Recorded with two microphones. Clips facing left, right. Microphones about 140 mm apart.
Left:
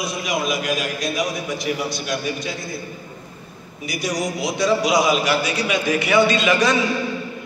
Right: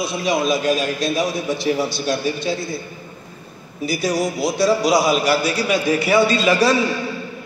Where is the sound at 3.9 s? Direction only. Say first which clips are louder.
Right 4 dB; 30° right (ahead or behind).